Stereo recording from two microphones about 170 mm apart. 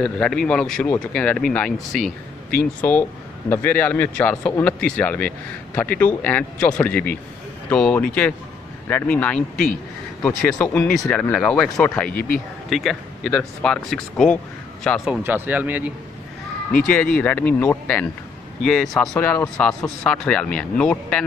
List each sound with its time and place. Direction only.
0.0 s speech: 5° left (ahead or behind)
12.1 s speech: 60° left (ahead or behind)
12.6 s speech: centre (ahead or behind)
15.0 s speech: 10° right (ahead or behind)
17.2 s speech: 10° left (ahead or behind)